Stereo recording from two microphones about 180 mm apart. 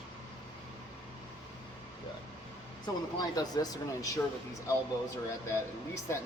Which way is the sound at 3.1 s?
20° left (ahead or behind).